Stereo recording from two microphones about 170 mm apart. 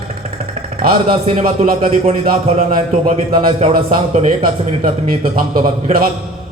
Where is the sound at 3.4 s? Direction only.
30° right (ahead or behind).